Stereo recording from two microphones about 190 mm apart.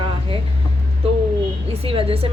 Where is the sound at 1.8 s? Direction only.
30° right (ahead or behind).